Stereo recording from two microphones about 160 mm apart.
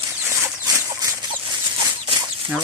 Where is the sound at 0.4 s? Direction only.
20° right (ahead or behind).